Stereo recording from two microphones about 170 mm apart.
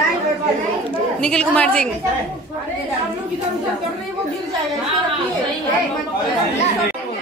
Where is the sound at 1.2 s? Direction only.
5° left (ahead or behind).